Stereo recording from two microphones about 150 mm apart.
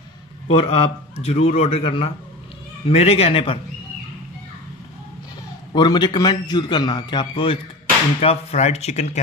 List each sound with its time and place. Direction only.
0.5 s a man's voice: 40° left (ahead or behind)
5.7 s a man's voice: 30° left (ahead or behind)
8.2 s speech: 45° left (ahead or behind)